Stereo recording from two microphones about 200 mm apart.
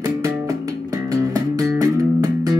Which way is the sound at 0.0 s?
15° right (ahead or behind).